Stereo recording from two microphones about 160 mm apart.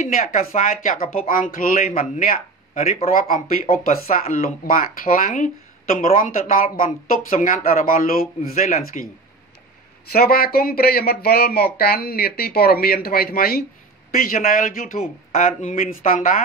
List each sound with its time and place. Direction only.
0.2 s speech: 40° left (ahead or behind)
0.7 s speech: 60° left (ahead or behind)
8.6 s speech: 50° left (ahead or behind)
10.1 s speech: 70° left (ahead or behind)
14.3 s speech: 55° left (ahead or behind)